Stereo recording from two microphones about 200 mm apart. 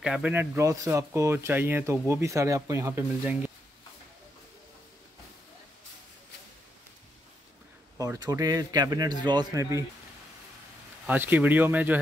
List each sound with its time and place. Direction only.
0.0 s speech: 5° right (ahead or behind)
8.0 s a man's voice: 15° right (ahead or behind)
11.1 s speech: 10° right (ahead or behind)